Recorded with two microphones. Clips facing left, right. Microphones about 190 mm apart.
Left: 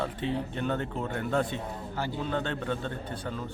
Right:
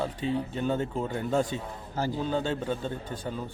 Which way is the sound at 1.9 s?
40° right (ahead or behind).